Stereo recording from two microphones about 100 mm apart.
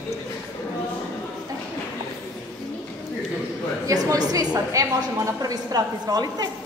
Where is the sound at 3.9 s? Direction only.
35° right (ahead or behind).